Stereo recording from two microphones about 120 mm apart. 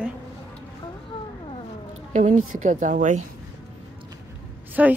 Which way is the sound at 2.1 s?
90° right.